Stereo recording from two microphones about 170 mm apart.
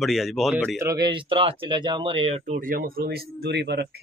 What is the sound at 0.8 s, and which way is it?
Speech, 25° right (ahead or behind).